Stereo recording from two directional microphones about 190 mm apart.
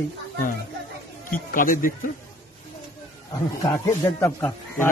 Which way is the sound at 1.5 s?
45° left (ahead or behind).